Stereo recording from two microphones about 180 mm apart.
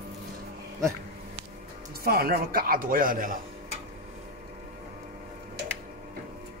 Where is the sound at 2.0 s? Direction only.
60° right (ahead or behind).